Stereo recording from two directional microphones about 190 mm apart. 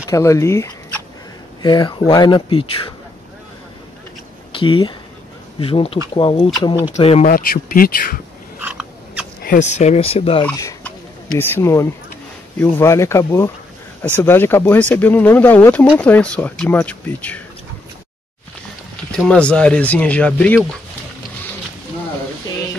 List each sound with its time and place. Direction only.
0.1 s speech: 15° left (ahead or behind)
4.5 s speech: 25° left (ahead or behind)
7.2 s speech: 50° left (ahead or behind)
8.5 s rodents: 5° right (ahead or behind)
9.4 s speech: 45° left (ahead or behind)
10.4 s speech: 10° left (ahead or behind)
19.1 s speech: 5° left (ahead or behind)